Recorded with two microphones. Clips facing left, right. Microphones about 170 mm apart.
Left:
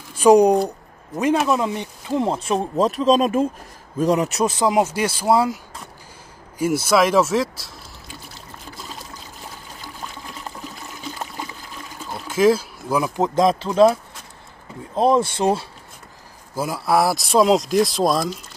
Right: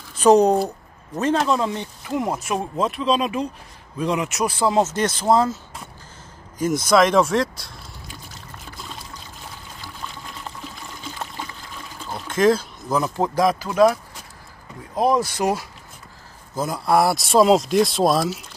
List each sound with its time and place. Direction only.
0.1 s speech: 10° left (ahead or behind)
2.1 s speech: 25° left (ahead or behind)
2.8 s speech: 40° left (ahead or behind)
4.5 s speech: 15° left (ahead or behind)
6.6 s speech: 10° left (ahead or behind)
12.1 s speech: 5° left (ahead or behind); by 13.9 s 25° left (ahead or behind)
15.0 s speech: 25° left (ahead or behind)
16.5 s speech: 5° left (ahead or behind)